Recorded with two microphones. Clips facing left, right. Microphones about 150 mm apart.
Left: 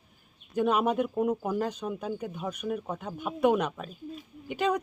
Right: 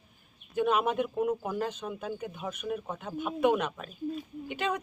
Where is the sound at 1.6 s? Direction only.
10° left (ahead or behind).